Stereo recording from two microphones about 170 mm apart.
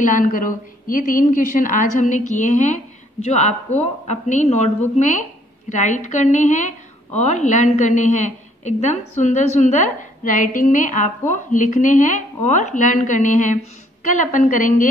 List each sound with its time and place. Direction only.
0.0 s a woman's voice: 50° left (ahead or behind)
3.8 s a woman's voice: 40° left (ahead or behind)